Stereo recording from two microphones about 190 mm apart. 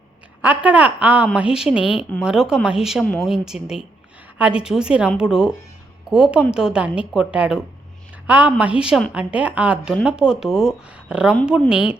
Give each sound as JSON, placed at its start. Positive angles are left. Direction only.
{"t": 0.4, "sound": "a woman's voice", "side_deg": -10}